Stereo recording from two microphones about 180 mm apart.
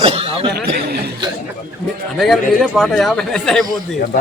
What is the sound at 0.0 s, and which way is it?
Chuckle, 30° right (ahead or behind).